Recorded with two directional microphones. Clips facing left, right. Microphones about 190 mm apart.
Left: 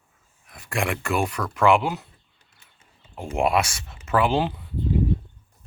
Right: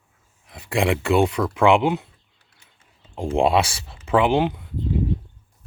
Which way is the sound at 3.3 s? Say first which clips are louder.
Right 3 dB; 30° right (ahead or behind).